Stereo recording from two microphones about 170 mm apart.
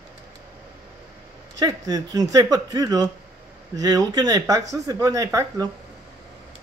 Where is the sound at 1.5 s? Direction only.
20° right (ahead or behind).